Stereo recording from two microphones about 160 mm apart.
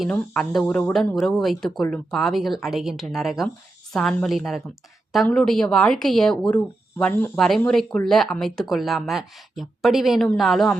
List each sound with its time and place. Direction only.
0.0 s speech: 5° left (ahead or behind)
7.3 s speech: centre (ahead or behind)